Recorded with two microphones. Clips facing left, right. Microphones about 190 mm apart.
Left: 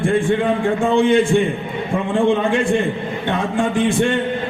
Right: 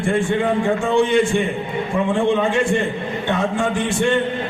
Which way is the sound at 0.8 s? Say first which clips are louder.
Left 4 dB; 55° left (ahead or behind).